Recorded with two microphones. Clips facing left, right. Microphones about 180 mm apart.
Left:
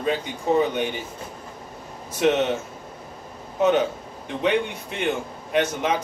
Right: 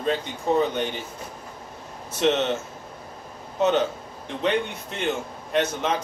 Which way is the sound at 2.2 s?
10° left (ahead or behind).